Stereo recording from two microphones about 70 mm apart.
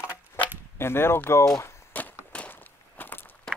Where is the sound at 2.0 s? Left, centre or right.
Left.